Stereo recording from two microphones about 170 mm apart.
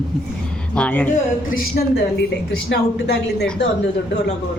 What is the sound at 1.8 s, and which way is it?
Speech, 55° left (ahead or behind).